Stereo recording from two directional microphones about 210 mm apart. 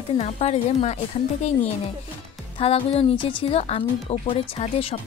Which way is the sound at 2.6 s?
25° left (ahead or behind).